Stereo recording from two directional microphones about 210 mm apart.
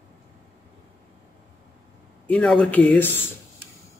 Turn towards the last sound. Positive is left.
turn(degrees=5)  # may be behind; listen again after turning